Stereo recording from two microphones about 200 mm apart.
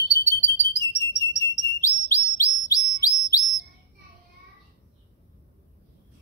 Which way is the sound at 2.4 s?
15° left (ahead or behind).